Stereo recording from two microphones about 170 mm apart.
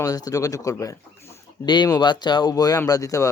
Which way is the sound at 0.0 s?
20° left (ahead or behind).